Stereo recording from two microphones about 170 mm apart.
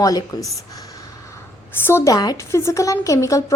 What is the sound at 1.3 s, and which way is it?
A woman's voice, 15° left (ahead or behind).